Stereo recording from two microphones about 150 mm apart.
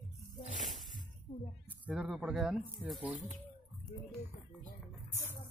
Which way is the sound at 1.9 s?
Centre (ahead or behind).